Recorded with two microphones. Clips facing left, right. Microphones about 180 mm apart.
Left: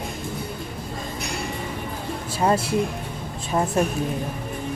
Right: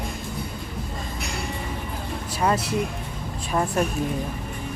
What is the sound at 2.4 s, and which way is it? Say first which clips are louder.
Speech: left 2 dB; 30° left (ahead or behind).